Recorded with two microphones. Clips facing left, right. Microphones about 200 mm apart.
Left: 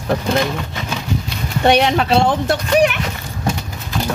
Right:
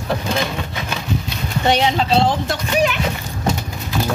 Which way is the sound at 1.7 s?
60° left (ahead or behind).